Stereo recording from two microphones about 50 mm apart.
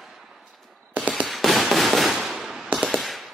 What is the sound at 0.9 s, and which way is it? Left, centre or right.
Firecracker, centre.